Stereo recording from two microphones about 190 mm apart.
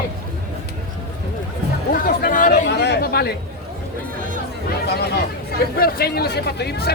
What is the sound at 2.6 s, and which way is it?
Chatter, 60° left (ahead or behind).